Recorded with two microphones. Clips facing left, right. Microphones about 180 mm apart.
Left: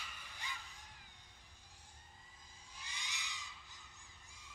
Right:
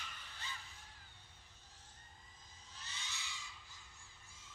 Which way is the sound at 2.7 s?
15° left (ahead or behind).